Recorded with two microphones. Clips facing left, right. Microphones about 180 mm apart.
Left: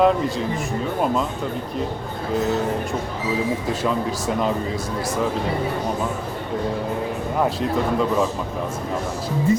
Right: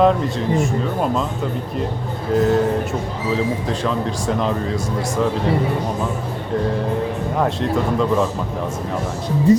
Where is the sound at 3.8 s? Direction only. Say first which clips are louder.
Right 1 dB; 5° left (ahead or behind).